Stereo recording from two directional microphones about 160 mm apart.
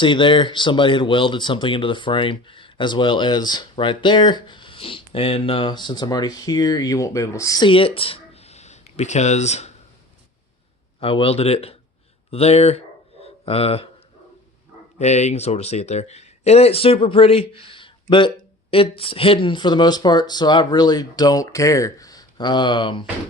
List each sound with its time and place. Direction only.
0.0 s speech: 30° left (ahead or behind)
11.0 s speech: 35° left (ahead or behind)
13.2 s a sound: 40° left (ahead or behind)
14.9 s speech: 45° left (ahead or behind)
17.5 s a sound: 35° left (ahead or behind)
18.1 s speech: 30° left (ahead or behind)